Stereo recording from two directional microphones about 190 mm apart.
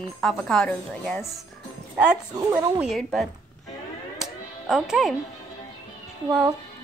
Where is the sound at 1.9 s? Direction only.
5° right (ahead or behind).